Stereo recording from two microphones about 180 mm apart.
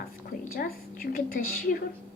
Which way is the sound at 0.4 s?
55° left (ahead or behind).